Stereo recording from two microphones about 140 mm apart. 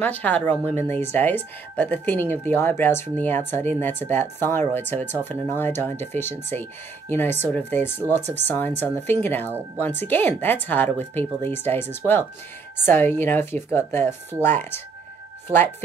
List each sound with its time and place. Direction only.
0.0 s speech: 10° left (ahead or behind)